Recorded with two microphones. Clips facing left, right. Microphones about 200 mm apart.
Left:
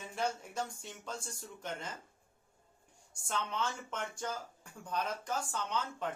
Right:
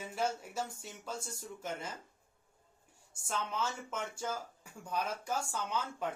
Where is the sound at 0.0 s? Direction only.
5° right (ahead or behind).